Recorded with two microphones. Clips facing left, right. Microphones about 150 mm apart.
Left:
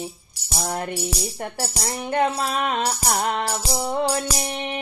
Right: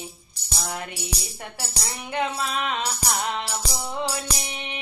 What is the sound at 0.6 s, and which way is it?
Music, 40° left (ahead or behind).